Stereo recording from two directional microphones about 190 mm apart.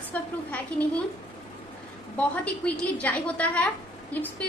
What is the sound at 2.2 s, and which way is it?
A woman's voice, 5° left (ahead or behind).